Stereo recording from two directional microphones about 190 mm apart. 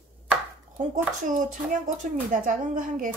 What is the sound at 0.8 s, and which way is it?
A child's voice, 40° right (ahead or behind).